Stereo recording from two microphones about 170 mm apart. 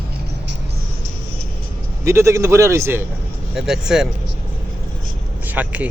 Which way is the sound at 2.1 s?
15° right (ahead or behind).